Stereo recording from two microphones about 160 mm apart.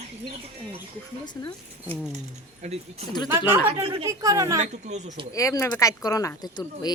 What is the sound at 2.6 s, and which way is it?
Speech, 40° right (ahead or behind).